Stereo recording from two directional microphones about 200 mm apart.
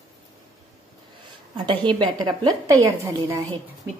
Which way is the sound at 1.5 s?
20° right (ahead or behind).